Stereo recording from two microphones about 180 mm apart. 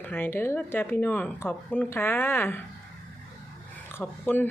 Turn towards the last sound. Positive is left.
turn(degrees=10)  # may be behind; listen again after turning